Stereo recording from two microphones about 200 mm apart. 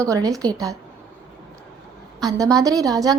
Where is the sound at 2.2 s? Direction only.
15° right (ahead or behind).